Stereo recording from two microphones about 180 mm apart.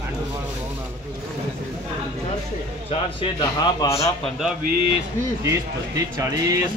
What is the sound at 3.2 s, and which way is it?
Speech, 25° left (ahead or behind).